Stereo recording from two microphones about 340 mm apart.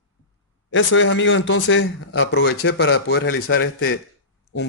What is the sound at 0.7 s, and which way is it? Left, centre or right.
A man's voice, left.